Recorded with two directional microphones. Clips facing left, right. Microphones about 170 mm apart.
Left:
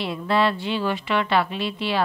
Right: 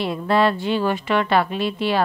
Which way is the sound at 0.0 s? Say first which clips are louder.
Right 3 dB; 45° right (ahead or behind).